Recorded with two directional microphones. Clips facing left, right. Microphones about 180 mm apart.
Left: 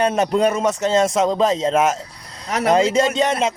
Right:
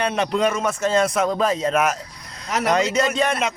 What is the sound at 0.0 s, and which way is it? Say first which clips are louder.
Speech: left 4 dB; 45° left (ahead or behind).